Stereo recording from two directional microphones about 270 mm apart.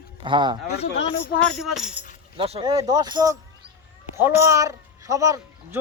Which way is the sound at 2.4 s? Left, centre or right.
Centre.